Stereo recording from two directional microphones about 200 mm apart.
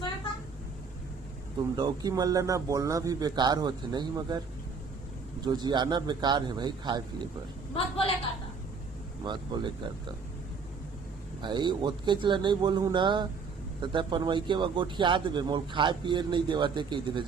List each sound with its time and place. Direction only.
1.7 s a man's voice: 20° right (ahead or behind)
5.5 s a man's voice: 20° right (ahead or behind)
7.8 s a woman's voice: 25° left (ahead or behind)
9.2 s a man's voice: 20° right (ahead or behind)
11.4 s a man's voice: 20° right (ahead or behind)